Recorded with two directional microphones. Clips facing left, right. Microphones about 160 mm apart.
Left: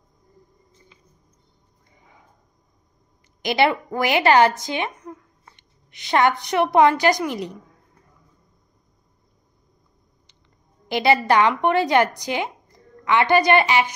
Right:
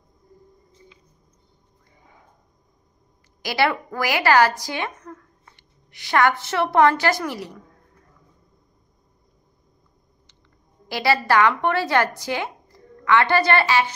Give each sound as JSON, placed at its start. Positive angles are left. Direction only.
{"t": 3.4, "sound": "a woman's voice", "side_deg": 20}
{"t": 10.9, "sound": "a woman's voice", "side_deg": 20}